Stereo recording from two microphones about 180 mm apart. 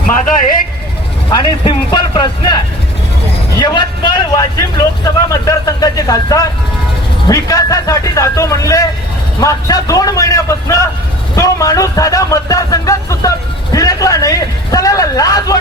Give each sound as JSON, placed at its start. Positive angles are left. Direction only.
{"t": 1.3, "sound": "speech", "side_deg": 25}
{"t": 3.6, "sound": "speech", "side_deg": 25}